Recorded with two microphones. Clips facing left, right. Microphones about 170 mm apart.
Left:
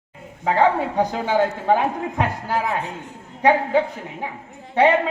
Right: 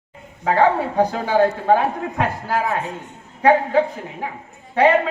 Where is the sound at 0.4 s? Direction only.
20° left (ahead or behind).